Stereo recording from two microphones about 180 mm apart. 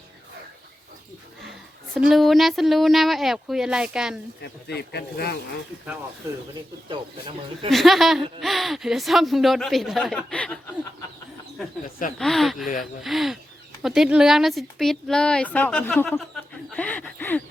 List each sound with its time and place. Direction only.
1.9 s speech: centre (ahead or behind)
4.4 s speech: 65° left (ahead or behind)
6.8 s speech: 30° right (ahead or behind)
7.7 s speech: centre (ahead or behind)
12.2 s speech: centre (ahead or behind)